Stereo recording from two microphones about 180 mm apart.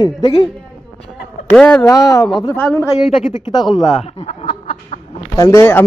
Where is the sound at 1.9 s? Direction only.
20° left (ahead or behind).